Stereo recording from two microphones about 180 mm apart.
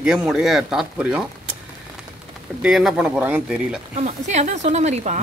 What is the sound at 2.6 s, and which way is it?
Speech, centre (ahead or behind).